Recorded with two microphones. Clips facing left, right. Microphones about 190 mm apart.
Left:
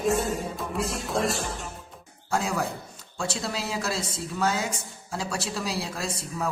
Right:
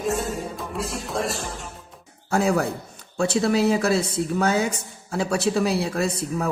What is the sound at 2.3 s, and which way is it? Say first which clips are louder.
Speech: right 6 dB; 60° right (ahead or behind).